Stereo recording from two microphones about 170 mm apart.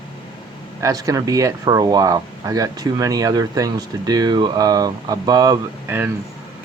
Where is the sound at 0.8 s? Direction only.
20° right (ahead or behind).